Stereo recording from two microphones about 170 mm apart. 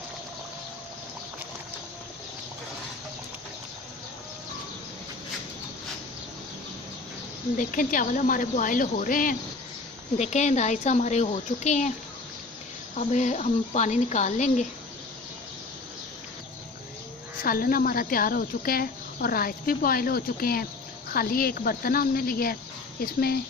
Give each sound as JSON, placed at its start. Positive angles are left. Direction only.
{"t": 7.5, "sound": "speech", "side_deg": 50}
{"t": 13.0, "sound": "speech", "side_deg": 45}
{"t": 17.4, "sound": "speech", "side_deg": 55}